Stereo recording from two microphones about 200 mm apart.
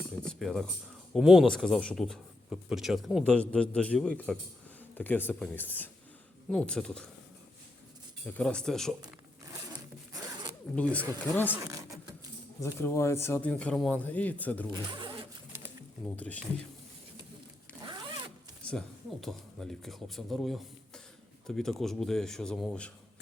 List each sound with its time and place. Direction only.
0.2 s a man's voice: 5° left (ahead or behind)
8.3 s a man's voice: 5° left (ahead or behind)
10.1 s zipper: 15° right (ahead or behind)
11.4 s a sound: 10° right (ahead or behind)
12.5 s speech: 15° left (ahead or behind)
14.7 s zipper: 25° right (ahead or behind)
16.1 s speech: 5° left (ahead or behind)
17.8 s zipper: 25° right (ahead or behind)
18.6 s a man's voice: 5° left (ahead or behind)